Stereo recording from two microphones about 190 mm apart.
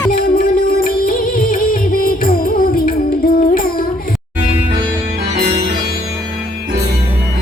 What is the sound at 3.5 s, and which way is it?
Child singing, 45° left (ahead or behind).